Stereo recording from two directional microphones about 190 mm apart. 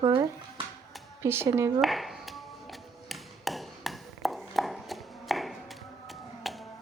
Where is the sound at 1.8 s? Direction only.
Centre (ahead or behind).